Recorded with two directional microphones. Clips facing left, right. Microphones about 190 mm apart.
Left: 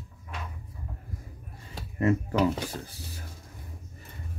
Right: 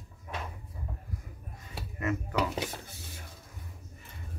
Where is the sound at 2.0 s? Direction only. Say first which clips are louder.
Left 6 dB; 30° left (ahead or behind).